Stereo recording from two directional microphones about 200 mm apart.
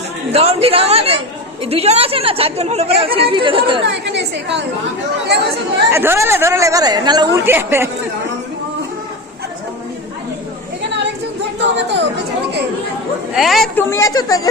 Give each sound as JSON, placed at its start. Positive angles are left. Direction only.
{"t": 0.3, "sound": "speech", "side_deg": -30}
{"t": 3.8, "sound": "a woman's voice", "side_deg": -60}
{"t": 5.9, "sound": "speech", "side_deg": -10}
{"t": 11.6, "sound": "speech", "side_deg": -60}
{"t": 13.3, "sound": "speech", "side_deg": 0}
{"t": 13.9, "sound": "a woman's voice", "side_deg": 15}